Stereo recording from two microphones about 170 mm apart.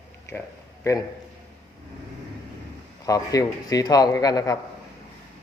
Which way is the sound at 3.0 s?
20° left (ahead or behind).